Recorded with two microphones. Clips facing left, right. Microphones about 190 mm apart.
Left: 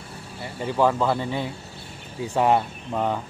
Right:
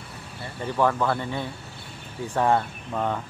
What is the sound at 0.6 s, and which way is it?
Speech, 10° left (ahead or behind).